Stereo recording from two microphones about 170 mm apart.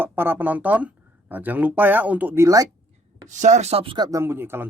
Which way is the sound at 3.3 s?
45° right (ahead or behind).